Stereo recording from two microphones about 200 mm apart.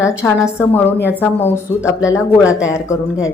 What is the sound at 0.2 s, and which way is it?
Speech, 5° left (ahead or behind).